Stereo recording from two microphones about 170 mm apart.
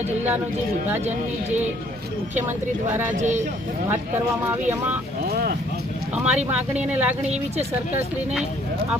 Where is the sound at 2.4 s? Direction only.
10° right (ahead or behind).